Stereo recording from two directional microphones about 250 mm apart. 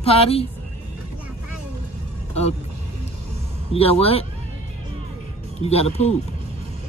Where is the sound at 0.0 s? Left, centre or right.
Left.